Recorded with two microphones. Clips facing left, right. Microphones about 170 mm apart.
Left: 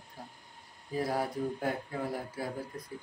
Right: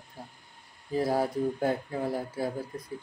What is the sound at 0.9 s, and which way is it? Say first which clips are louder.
Speech: right 5 dB; 30° right (ahead or behind).